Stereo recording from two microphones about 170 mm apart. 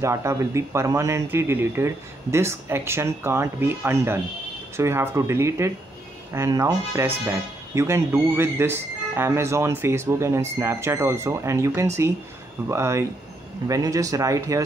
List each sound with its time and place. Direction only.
0.0 s speech: 15° right (ahead or behind)